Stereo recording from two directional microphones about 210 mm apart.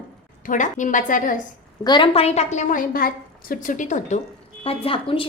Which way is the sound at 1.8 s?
20° left (ahead or behind).